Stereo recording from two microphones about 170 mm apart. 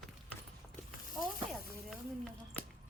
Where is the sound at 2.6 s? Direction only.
5° left (ahead or behind).